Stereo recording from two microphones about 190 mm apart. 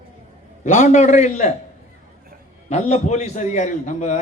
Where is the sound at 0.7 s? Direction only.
40° left (ahead or behind).